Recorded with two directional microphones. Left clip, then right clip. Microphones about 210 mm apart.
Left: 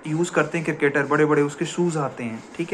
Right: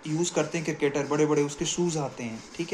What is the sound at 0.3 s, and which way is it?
Speech, 15° right (ahead or behind).